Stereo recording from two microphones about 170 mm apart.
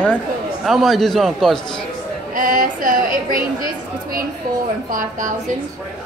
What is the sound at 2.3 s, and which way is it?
A woman's voice, 55° right (ahead or behind).